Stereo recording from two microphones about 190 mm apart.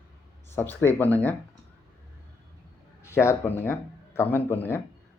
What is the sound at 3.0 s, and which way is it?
Speech, 15° left (ahead or behind).